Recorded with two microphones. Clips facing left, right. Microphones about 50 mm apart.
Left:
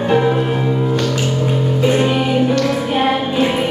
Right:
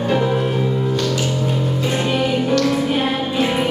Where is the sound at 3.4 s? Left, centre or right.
Centre.